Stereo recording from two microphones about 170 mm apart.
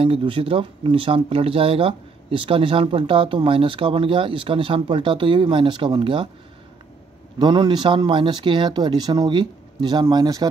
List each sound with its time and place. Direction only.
0.0 s speech: 30° right (ahead or behind)
7.3 s speech: 25° right (ahead or behind)